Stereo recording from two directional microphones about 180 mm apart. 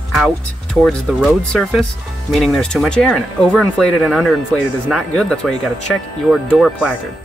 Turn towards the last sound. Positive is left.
turn(degrees=0)  # may be behind; listen again after turning